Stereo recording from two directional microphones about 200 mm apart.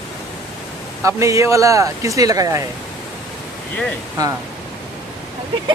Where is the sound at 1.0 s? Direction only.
15° right (ahead or behind).